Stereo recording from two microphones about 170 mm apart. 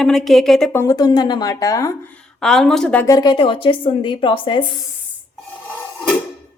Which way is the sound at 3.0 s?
25° left (ahead or behind).